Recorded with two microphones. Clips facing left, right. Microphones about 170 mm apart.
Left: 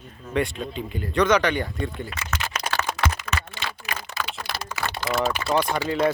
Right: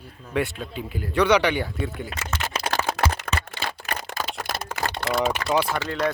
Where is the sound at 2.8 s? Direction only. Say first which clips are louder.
Right 2 dB; 30° right (ahead or behind).